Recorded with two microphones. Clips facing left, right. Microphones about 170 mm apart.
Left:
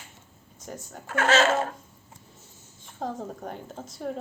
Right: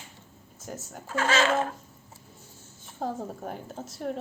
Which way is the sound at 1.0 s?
60° left (ahead or behind).